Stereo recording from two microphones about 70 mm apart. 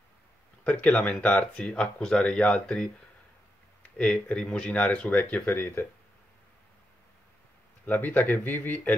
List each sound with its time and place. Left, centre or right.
0.7 s speech: left
4.0 s speech: centre
5.4 s speech: left
7.8 s speech: left